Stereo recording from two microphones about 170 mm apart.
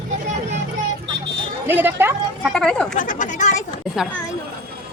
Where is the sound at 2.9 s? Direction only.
50° left (ahead or behind).